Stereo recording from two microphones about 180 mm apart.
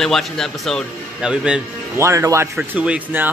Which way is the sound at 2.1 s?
15° right (ahead or behind).